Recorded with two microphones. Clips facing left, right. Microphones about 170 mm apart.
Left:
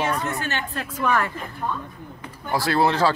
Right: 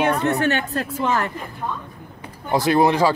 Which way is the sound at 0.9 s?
20° right (ahead or behind).